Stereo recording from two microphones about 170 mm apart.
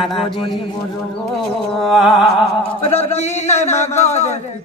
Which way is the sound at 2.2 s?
35° left (ahead or behind).